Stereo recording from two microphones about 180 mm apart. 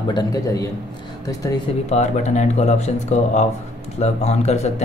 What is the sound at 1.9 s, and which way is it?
Speech, 40° left (ahead or behind).